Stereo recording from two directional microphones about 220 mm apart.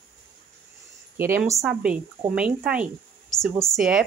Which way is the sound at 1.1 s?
10° right (ahead or behind).